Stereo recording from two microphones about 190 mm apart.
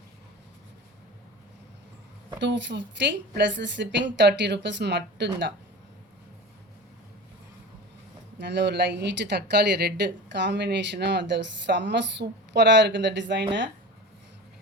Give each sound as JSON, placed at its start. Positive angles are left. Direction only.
{"t": 2.4, "sound": "speech", "side_deg": -70}
{"t": 8.4, "sound": "speech", "side_deg": -65}